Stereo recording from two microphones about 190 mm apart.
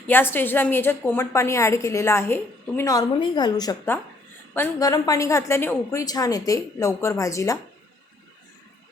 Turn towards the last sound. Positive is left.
turn(degrees=15)  # may be behind; listen again after turning